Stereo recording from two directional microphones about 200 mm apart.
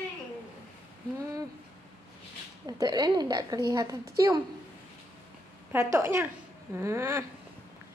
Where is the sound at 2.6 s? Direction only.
20° right (ahead or behind).